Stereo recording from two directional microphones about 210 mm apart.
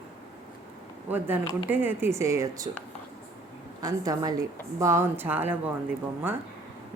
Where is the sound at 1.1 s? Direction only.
10° right (ahead or behind).